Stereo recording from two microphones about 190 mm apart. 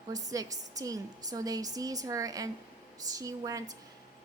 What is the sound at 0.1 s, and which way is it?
A woman's voice, 20° right (ahead or behind).